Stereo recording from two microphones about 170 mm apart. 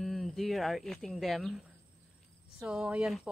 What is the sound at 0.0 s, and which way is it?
Speech, centre (ahead or behind).